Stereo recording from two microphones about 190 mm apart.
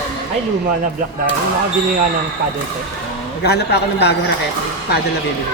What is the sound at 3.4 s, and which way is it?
Speech, 60° left (ahead or behind).